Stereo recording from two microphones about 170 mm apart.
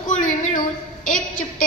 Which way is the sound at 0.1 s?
50° left (ahead or behind).